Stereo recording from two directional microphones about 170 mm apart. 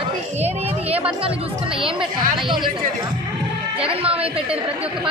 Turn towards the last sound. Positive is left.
turn(degrees=-35)  # may be behind; listen again after turning